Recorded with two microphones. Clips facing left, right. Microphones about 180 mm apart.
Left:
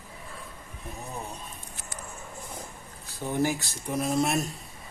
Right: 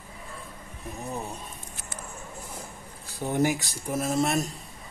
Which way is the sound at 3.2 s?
15° right (ahead or behind).